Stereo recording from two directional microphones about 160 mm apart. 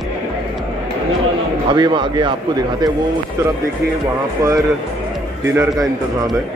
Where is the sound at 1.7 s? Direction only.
30° right (ahead or behind).